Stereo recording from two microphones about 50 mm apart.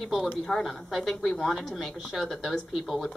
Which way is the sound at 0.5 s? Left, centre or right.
Centre.